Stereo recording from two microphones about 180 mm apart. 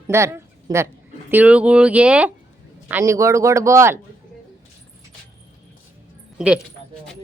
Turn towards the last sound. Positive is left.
turn(degrees=-5)  # may be behind; listen again after turning